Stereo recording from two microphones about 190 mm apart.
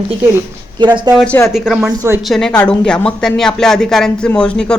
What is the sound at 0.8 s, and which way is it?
Speech, 25° right (ahead or behind).